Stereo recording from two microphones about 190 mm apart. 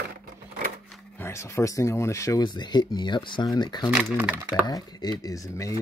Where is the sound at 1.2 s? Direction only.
15° left (ahead or behind).